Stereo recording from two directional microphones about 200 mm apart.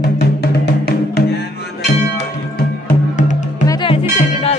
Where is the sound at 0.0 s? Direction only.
50° left (ahead or behind).